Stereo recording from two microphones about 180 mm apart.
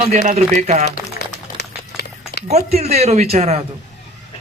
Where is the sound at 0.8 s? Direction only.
60° left (ahead or behind).